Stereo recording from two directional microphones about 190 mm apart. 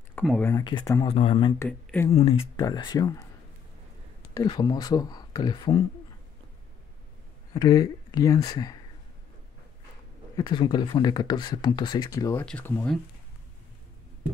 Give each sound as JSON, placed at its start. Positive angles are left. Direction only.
{"t": 0.1, "sound": "speech", "side_deg": 5}
{"t": 1.0, "sound": "speech", "side_deg": 30}
{"t": 1.6, "sound": "speech", "side_deg": 10}
{"t": 2.1, "sound": "speech", "side_deg": 30}
{"t": 4.3, "sound": "speech", "side_deg": 20}
{"t": 7.5, "sound": "speech", "side_deg": 20}
{"t": 10.3, "sound": "speech", "side_deg": 25}